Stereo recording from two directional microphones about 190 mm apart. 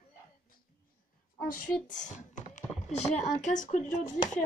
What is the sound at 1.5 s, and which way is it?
Speech, 45° left (ahead or behind).